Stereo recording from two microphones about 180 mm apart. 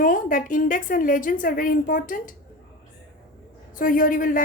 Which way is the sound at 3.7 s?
50° left (ahead or behind).